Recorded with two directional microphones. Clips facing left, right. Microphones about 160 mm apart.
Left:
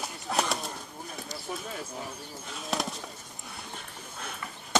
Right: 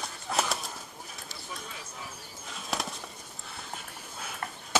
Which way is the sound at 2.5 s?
Centre (ahead or behind).